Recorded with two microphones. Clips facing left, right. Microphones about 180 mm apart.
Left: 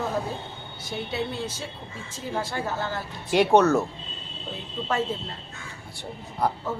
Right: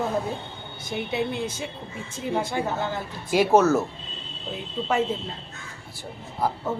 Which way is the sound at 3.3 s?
Centre (ahead or behind).